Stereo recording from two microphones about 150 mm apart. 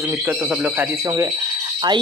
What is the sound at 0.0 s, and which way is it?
Speech, 15° right (ahead or behind).